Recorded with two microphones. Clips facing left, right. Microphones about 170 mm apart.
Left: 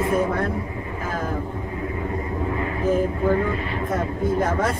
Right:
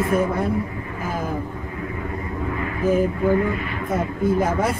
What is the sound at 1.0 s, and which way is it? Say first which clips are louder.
Speech: right 1 dB; 10° right (ahead or behind).